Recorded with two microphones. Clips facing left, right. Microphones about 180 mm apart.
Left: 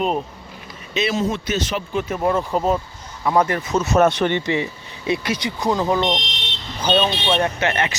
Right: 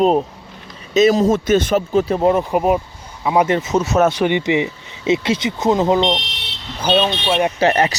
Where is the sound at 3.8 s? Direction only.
5° right (ahead or behind).